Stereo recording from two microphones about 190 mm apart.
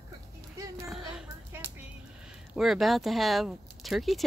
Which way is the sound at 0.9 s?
5° right (ahead or behind).